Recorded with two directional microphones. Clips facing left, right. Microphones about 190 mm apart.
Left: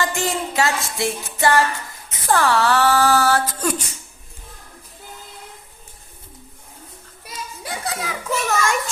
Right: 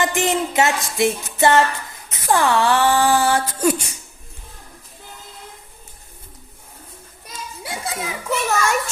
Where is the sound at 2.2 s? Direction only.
15° right (ahead or behind).